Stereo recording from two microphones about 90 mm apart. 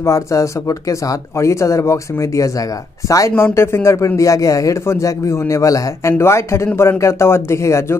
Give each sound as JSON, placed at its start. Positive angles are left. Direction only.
{"t": 0.0, "sound": "a man's voice", "side_deg": 35}